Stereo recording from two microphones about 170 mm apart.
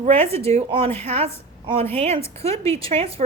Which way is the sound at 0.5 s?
35° right (ahead or behind).